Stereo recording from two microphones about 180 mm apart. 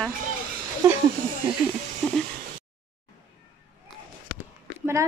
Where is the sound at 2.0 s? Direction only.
Centre (ahead or behind).